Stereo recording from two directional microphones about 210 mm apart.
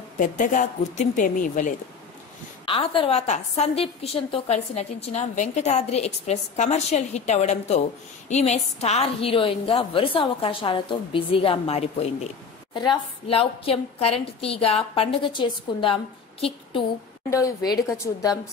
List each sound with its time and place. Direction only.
0.2 s a woman's voice: 40° left (ahead or behind)
2.6 s a woman's voice: 25° left (ahead or behind)
17.3 s a woman's voice: 15° left (ahead or behind)